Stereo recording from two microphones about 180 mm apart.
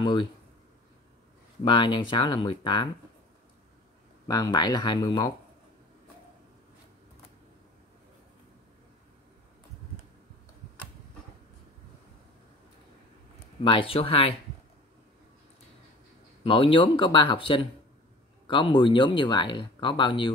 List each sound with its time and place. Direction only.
0.0 s speech: 25° left (ahead or behind)
1.6 s speech: 25° left (ahead or behind)
4.3 s speech: 20° left (ahead or behind)
13.7 s speech: 30° left (ahead or behind)
16.4 s speech: 30° left (ahead or behind)